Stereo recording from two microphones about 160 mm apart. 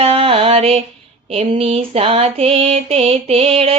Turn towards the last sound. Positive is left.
turn(degrees=-35)  # may be behind; listen again after turning